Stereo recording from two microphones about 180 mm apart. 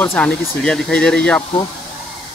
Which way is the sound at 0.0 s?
10° left (ahead or behind).